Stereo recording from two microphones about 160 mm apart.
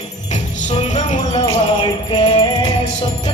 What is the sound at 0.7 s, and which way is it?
Music, 45° left (ahead or behind).